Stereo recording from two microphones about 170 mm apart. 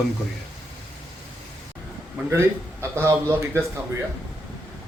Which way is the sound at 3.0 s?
15° right (ahead or behind).